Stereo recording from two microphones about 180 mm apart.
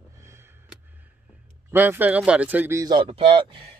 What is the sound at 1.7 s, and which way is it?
Speech, 10° right (ahead or behind).